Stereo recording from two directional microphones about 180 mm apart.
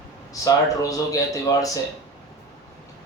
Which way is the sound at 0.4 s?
20° left (ahead or behind).